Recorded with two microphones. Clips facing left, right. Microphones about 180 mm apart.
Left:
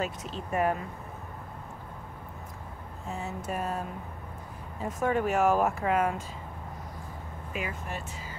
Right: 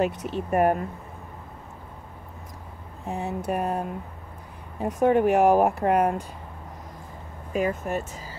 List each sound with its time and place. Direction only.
0.0 s speech: 60° right (ahead or behind)
3.1 s speech: 60° right (ahead or behind)
5.0 s speech: 60° right (ahead or behind)
7.5 s speech: 45° right (ahead or behind)